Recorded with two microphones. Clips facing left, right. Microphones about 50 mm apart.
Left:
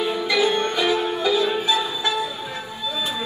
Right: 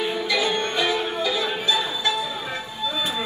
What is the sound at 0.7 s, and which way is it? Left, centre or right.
Music, right.